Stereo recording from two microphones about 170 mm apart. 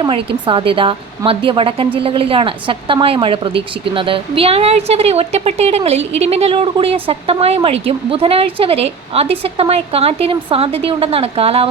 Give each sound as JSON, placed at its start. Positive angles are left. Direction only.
{"t": 0.4, "sound": "a woman's voice", "side_deg": -30}